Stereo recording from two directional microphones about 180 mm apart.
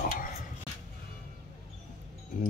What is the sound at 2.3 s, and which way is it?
Speech, 45° left (ahead or behind).